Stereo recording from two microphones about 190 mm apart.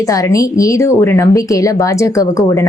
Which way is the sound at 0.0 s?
15° left (ahead or behind).